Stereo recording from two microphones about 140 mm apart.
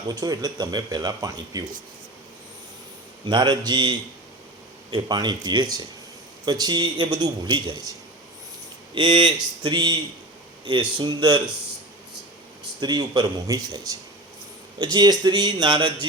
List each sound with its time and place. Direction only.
0.1 s speech: 25° right (ahead or behind)
3.2 s speech: 30° right (ahead or behind)
9.0 s speech: 35° right (ahead or behind)
12.8 s speech: 30° right (ahead or behind)
14.9 s speech: 30° right (ahead or behind)